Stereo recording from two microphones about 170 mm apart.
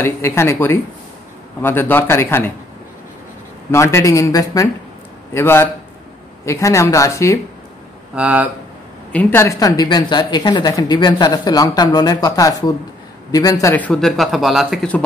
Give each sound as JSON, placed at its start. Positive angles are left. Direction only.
{"t": 0.0, "sound": "speech", "side_deg": 15}
{"t": 3.7, "sound": "speech", "side_deg": 15}
{"t": 8.1, "sound": "speech", "side_deg": -10}
{"t": 9.1, "sound": "speech", "side_deg": 10}